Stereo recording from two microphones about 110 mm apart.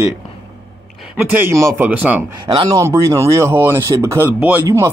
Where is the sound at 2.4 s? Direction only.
40° right (ahead or behind).